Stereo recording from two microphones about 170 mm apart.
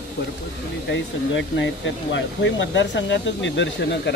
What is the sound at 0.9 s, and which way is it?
Speech, 90° left.